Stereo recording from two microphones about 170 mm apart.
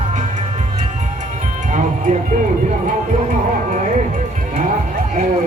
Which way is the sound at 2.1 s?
45° right (ahead or behind).